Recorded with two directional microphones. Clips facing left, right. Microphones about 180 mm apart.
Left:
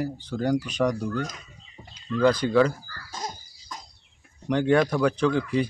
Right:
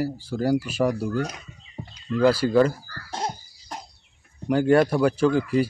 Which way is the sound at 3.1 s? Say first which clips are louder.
Right 6 dB; 70° right (ahead or behind).